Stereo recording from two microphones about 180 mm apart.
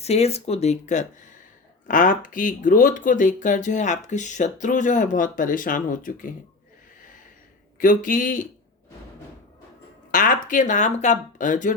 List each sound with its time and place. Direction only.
0.0 s speech: 35° left (ahead or behind)
7.8 s speech: 45° left (ahead or behind)
10.1 s speech: 50° left (ahead or behind)